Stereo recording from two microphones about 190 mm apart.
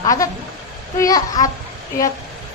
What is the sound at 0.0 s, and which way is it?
A woman's voice, 20° left (ahead or behind).